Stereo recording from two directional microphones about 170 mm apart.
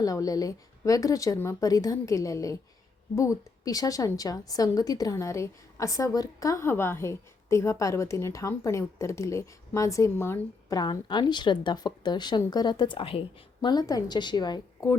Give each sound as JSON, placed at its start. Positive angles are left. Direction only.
{"t": 0.0, "sound": "a woman's voice", "side_deg": 20}